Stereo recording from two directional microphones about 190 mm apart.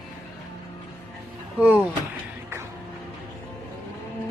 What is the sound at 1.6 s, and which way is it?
Speech, 10° right (ahead or behind).